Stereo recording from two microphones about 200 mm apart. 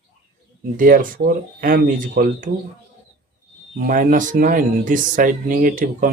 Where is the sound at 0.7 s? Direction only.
45° right (ahead or behind).